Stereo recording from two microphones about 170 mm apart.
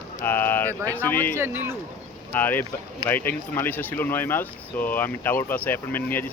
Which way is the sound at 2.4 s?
10° left (ahead or behind).